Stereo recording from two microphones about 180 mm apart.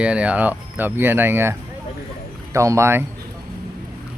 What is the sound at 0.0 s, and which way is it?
Speech, 5° right (ahead or behind).